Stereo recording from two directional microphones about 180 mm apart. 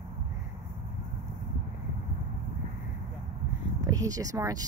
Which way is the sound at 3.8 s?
20° right (ahead or behind).